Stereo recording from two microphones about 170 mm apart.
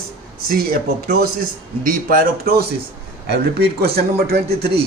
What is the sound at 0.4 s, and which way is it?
Speech, 60° right (ahead or behind).